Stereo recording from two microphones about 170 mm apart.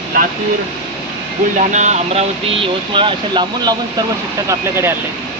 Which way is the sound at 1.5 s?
45° right (ahead or behind).